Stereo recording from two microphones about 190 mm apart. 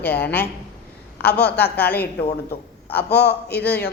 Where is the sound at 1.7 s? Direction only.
10° left (ahead or behind).